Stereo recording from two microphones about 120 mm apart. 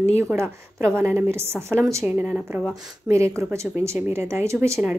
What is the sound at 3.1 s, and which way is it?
Speech, 25° right (ahead or behind).